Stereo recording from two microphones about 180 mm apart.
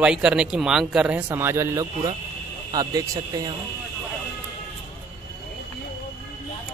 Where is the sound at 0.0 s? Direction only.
5° right (ahead or behind); by 3.5 s 20° right (ahead or behind).